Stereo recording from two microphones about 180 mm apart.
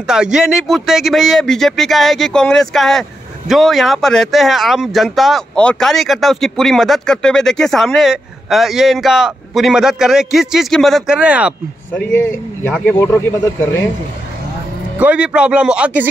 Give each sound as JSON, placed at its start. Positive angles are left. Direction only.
{"t": 0.0, "sound": "speech", "side_deg": -5}
{"t": 11.9, "sound": "speech", "side_deg": 10}
{"t": 15.0, "sound": "speech", "side_deg": -5}